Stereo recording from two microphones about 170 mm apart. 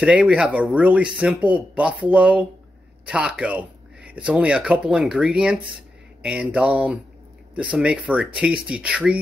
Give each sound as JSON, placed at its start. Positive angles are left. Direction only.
{"t": 0.0, "sound": "speech", "side_deg": -5}